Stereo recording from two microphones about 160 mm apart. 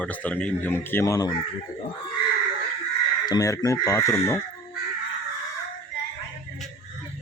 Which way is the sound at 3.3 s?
20° left (ahead or behind).